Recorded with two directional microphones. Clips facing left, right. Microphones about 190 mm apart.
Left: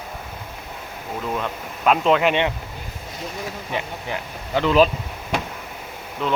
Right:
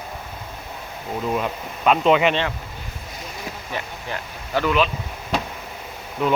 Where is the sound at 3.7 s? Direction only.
20° left (ahead or behind).